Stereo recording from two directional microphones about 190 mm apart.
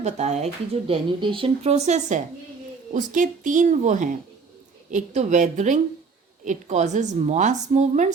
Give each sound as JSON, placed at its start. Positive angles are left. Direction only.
{"t": 0.0, "sound": "a woman's voice", "side_deg": -35}